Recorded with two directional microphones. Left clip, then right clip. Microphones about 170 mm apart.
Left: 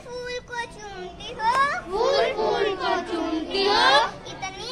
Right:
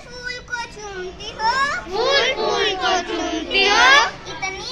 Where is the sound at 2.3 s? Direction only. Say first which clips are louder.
Right 4 dB; 65° left (ahead or behind).